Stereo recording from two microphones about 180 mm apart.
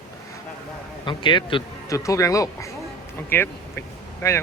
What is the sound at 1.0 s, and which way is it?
Speech, 25° left (ahead or behind).